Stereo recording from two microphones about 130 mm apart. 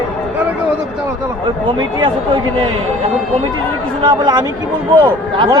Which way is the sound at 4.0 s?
35° right (ahead or behind).